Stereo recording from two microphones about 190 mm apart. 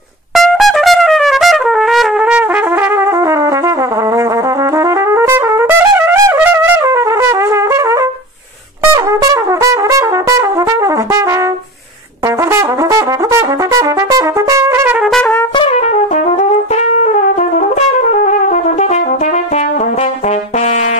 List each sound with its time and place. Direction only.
0.4 s trumpet: centre (ahead or behind)
3.0 s trumpet: 15° right (ahead or behind)
4.7 s trumpet: 15° right (ahead or behind)
8.8 s brass instrument: 20° right (ahead or behind)
12.5 s brass instrument: 15° right (ahead or behind)
15.0 s trumpet: 5° left (ahead or behind)
15.5 s brass instrument: 25° left (ahead or behind)
17.0 s brass instrument: 40° left (ahead or behind)